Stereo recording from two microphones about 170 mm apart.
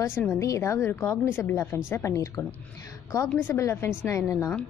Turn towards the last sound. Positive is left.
turn(degrees=15)  # may be behind; listen again after turning